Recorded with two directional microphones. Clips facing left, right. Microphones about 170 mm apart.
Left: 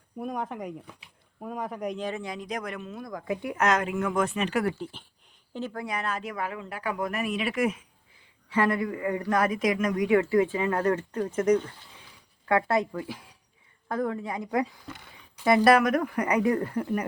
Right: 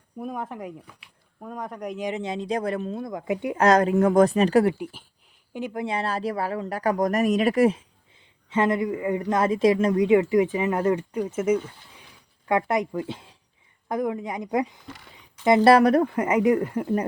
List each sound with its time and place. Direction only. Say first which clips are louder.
0.2 s speech: even; centre (ahead or behind)
2.0 s speech: right 4 dB; 20° right (ahead or behind)
3.6 s speech: right 8 dB; 35° right (ahead or behind)
4.6 s speech: right 5 dB; 15° right (ahead or behind)
5.8 s speech: right 8 dB; 30° right (ahead or behind); by 11.7 s 5° right (ahead or behind)
12.5 s speech: right 1 dB; 20° right (ahead or behind)